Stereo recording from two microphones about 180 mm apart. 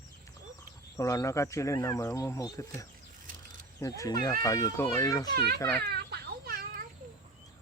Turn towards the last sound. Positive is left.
turn(degrees=-55)  # may be behind; listen again after turning